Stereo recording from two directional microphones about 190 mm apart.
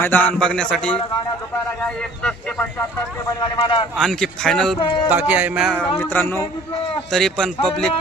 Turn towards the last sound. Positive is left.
turn(degrees=5)  # may be behind; listen again after turning